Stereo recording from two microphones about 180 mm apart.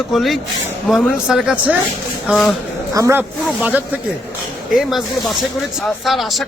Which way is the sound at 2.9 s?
15° right (ahead or behind).